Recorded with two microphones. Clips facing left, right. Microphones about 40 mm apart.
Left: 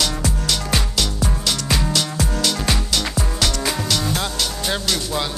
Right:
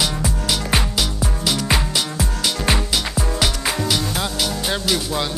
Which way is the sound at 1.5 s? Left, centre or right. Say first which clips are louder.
Right 2 dB; centre.